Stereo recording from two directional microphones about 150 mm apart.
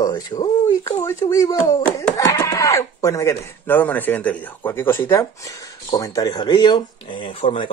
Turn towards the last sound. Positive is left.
turn(degrees=35)  # may be behind; listen again after turning